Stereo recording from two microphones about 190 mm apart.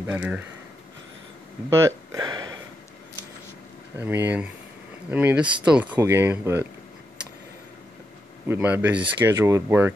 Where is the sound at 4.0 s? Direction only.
10° right (ahead or behind).